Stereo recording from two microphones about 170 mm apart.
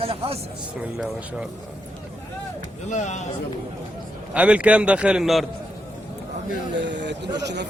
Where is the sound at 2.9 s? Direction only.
45° left (ahead or behind).